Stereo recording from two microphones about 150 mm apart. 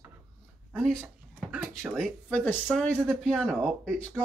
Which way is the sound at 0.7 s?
Centre (ahead or behind).